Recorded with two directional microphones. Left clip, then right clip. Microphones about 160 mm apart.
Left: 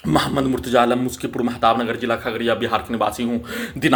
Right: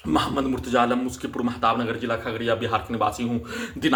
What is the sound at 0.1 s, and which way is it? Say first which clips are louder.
Speech: left 4 dB; 40° left (ahead or behind).